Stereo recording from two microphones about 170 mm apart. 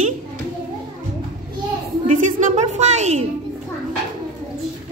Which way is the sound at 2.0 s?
50° right (ahead or behind).